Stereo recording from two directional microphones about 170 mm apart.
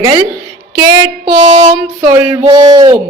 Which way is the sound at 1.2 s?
40° right (ahead or behind).